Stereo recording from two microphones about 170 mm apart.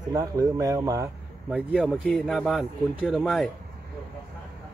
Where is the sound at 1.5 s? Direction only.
5° right (ahead or behind).